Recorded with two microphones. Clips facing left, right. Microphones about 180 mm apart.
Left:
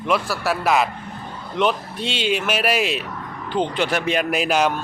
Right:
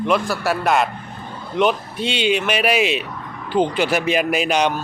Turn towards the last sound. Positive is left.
turn(degrees=0)  # may be behind; listen again after turning